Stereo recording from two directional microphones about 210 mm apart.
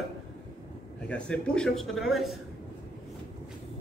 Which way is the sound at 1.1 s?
5° left (ahead or behind).